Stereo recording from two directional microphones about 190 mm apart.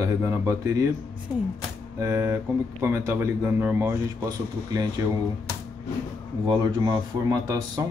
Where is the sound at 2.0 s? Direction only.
15° right (ahead or behind).